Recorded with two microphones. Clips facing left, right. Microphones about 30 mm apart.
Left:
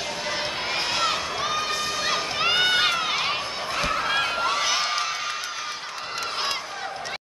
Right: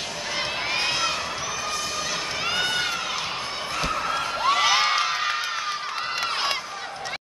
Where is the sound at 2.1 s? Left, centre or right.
Left.